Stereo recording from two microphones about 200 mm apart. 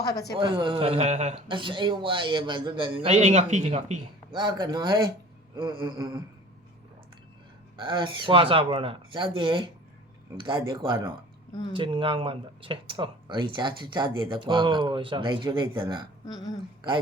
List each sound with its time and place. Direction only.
0.3 s speech: 25° right (ahead or behind)
4.3 s speech: 20° right (ahead or behind)
7.8 s speech: 25° right (ahead or behind)
11.7 s speech: 25° right (ahead or behind)